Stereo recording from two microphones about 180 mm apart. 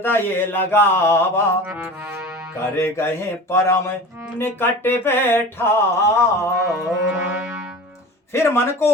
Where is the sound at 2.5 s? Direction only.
15° left (ahead or behind).